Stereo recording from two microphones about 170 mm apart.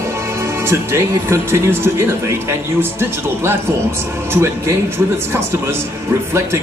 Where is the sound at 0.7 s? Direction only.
15° right (ahead or behind).